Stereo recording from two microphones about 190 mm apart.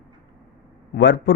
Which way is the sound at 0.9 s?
65° left (ahead or behind).